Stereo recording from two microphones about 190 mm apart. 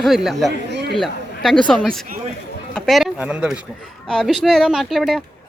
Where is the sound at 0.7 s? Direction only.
65° right (ahead or behind).